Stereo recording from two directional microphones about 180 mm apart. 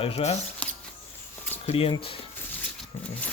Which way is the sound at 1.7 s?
30° left (ahead or behind).